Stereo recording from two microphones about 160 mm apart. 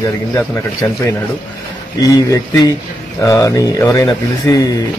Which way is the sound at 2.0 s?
20° left (ahead or behind).